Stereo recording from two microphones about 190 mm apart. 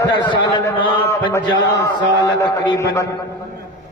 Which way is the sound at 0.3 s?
25° left (ahead or behind).